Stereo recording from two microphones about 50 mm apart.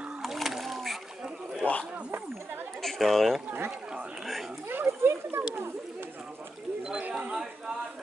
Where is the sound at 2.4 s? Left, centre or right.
Right.